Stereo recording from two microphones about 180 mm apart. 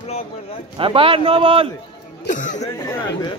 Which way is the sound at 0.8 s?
30° right (ahead or behind).